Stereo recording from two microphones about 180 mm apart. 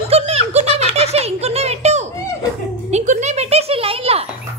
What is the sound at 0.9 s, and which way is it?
Giggle, 35° right (ahead or behind).